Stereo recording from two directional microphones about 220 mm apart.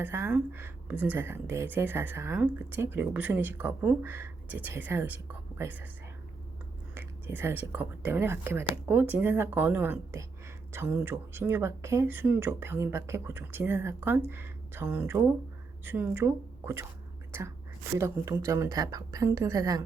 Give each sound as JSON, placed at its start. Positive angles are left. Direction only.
{"t": 0.0, "sound": "speech", "side_deg": -10}
{"t": 6.9, "sound": "a woman's voice", "side_deg": -10}
{"t": 17.9, "sound": "speech", "side_deg": -15}